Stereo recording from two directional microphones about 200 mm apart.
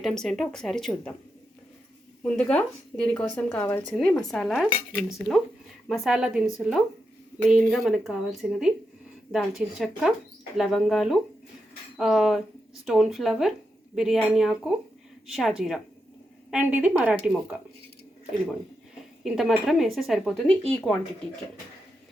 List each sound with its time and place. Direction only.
0.0 s speech: centre (ahead or behind)
2.2 s a woman's voice: 5° left (ahead or behind)
19.2 s speech: centre (ahead or behind)